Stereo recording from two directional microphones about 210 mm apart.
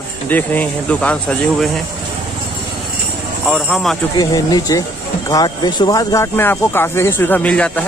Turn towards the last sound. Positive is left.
turn(degrees=5)  # may be behind; listen again after turning